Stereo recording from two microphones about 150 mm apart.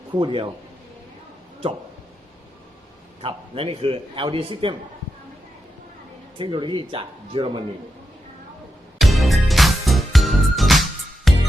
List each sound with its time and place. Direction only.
0.2 s a man's voice: 35° right (ahead or behind)
3.2 s a man's voice: 40° right (ahead or behind)
6.3 s a man's voice: 35° right (ahead or behind)
9.0 s music: centre (ahead or behind)